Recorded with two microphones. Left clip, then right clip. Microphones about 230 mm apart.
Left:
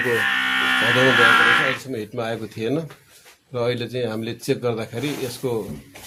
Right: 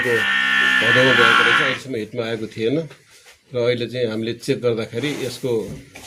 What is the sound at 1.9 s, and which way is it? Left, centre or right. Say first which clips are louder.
Speech: right 2 dB; centre.